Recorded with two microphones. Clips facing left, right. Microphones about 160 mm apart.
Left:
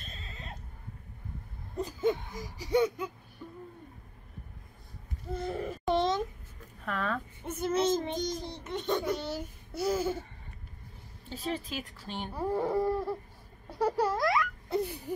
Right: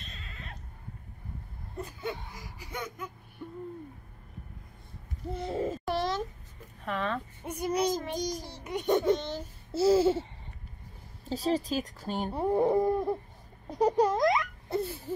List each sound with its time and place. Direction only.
0.2 s a sound: 30° left (ahead or behind)
1.8 s a sound: 40° left (ahead or behind)
5.4 s dog: 25° right (ahead or behind)
5.9 s a sound: 20° left (ahead or behind)
6.8 s speech: centre (ahead or behind)
7.4 s a child's voice: 15° right (ahead or behind)
9.4 s dog: 30° right (ahead or behind)
11.2 s speech: 35° right (ahead or behind)
12.3 s dog: 25° right (ahead or behind)
13.7 s babbling: 15° right (ahead or behind)
14.7 s music: 15° left (ahead or behind)